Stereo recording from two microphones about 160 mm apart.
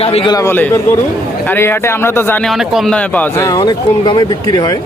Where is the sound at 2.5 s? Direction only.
Centre (ahead or behind); by 4.8 s 25° left (ahead or behind).